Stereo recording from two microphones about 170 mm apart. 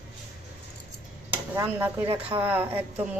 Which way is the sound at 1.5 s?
15° right (ahead or behind).